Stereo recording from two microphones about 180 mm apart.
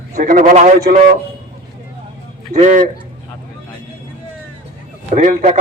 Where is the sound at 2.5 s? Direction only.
45° right (ahead or behind).